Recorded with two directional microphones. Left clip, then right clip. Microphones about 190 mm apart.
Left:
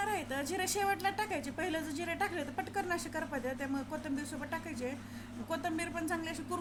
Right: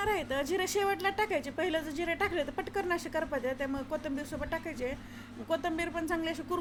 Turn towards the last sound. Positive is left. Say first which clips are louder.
# right 4 dB
turn(degrees=-15)  # may be behind; listen again after turning